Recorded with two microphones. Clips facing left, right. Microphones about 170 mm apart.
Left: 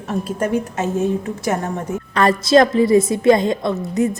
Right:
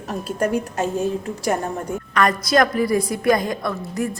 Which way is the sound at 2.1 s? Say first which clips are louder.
Left 5 dB; 25° left (ahead or behind).